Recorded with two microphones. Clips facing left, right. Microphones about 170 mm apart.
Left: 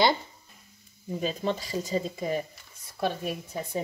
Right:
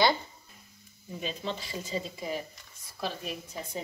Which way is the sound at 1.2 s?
45° left (ahead or behind).